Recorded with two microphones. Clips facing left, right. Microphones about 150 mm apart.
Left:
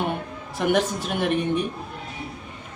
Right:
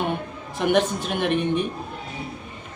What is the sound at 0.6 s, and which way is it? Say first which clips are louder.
A woman's voice: right 1 dB; 5° left (ahead or behind).